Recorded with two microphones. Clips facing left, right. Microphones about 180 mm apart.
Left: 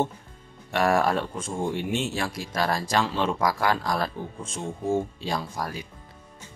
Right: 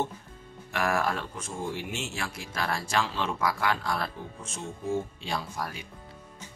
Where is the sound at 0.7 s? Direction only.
30° left (ahead or behind).